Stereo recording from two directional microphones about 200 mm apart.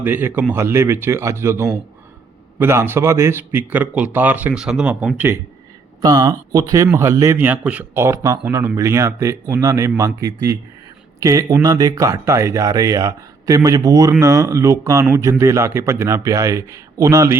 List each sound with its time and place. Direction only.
0.0 s a man's voice: 10° right (ahead or behind)